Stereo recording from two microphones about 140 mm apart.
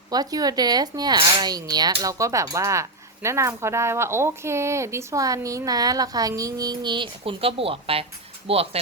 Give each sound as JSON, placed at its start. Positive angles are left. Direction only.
{"t": 0.1, "sound": "speech", "side_deg": -25}